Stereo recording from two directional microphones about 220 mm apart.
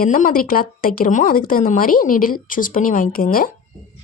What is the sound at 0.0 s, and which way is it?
Speech, 35° left (ahead or behind).